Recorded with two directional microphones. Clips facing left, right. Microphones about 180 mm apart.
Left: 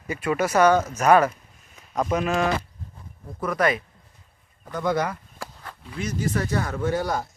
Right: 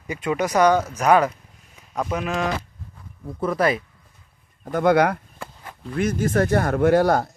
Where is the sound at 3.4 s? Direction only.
30° right (ahead or behind).